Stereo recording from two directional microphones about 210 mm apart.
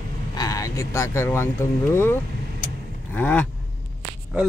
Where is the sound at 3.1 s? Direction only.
5° left (ahead or behind).